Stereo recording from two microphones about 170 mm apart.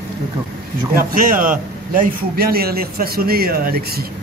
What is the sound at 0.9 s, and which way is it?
A man's voice, 55° right (ahead or behind).